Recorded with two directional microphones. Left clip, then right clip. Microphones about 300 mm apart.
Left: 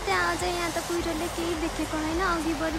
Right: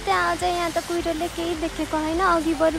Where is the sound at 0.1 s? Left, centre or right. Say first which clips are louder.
Right 5 dB; centre.